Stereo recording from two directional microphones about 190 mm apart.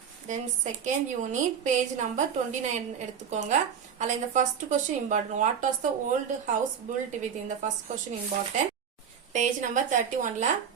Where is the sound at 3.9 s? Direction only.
40° right (ahead or behind).